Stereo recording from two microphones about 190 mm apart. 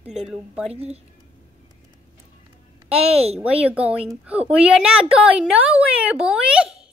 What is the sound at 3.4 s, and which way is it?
A woman's voice, 5° right (ahead or behind).